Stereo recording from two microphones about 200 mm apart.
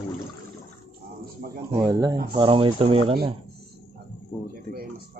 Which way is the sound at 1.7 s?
15° right (ahead or behind).